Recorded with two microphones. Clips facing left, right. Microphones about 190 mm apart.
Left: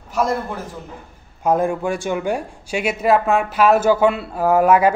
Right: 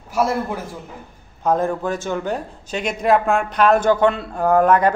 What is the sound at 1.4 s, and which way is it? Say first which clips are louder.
Speech: left 1 dB; 10° left (ahead or behind).